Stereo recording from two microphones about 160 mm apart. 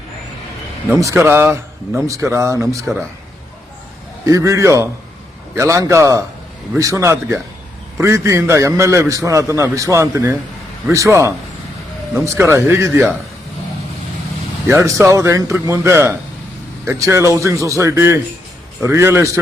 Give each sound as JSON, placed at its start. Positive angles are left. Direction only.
{"t": 0.9, "sound": "a man's voice", "side_deg": -20}
{"t": 4.3, "sound": "a man's voice", "side_deg": -20}
{"t": 14.7, "sound": "a man's voice", "side_deg": -15}